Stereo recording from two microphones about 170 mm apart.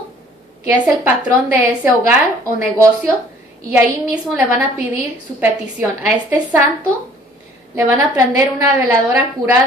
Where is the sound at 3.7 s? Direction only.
5° right (ahead or behind).